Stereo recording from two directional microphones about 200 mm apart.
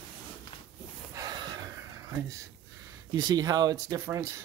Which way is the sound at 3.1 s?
20° right (ahead or behind).